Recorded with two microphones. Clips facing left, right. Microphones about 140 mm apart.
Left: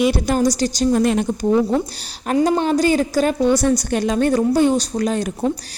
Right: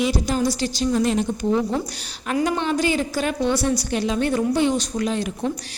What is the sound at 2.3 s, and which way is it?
A woman's voice, 35° left (ahead or behind).